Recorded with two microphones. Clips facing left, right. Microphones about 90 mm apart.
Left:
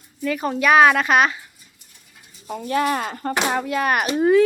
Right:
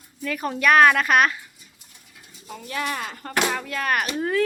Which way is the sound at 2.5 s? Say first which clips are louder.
Left 8 dB; 40° left (ahead or behind).